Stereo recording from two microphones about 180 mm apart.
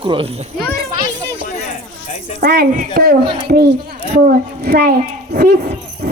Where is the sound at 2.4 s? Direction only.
65° right (ahead or behind).